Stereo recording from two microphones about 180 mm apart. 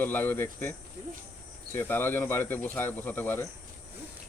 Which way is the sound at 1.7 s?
10° left (ahead or behind).